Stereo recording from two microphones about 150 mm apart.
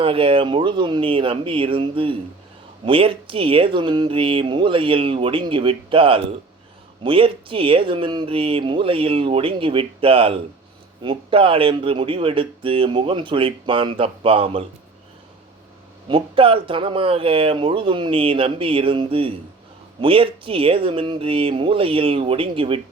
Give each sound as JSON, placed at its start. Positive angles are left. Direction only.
{"t": 0.0, "sound": "speech", "side_deg": -35}
{"t": 16.0, "sound": "speech", "side_deg": -35}